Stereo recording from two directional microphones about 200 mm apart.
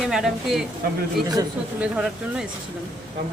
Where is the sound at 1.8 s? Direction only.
5° right (ahead or behind).